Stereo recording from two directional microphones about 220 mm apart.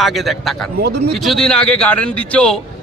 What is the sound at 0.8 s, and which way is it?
Speech, 45° right (ahead or behind).